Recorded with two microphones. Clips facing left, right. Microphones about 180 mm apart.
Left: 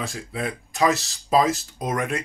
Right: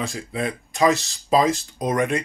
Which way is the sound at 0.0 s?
Centre (ahead or behind).